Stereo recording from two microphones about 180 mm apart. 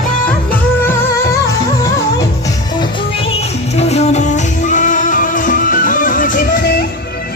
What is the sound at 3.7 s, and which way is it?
Music, 35° left (ahead or behind).